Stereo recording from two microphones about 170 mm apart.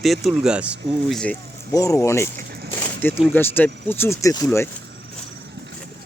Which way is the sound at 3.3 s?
10° left (ahead or behind).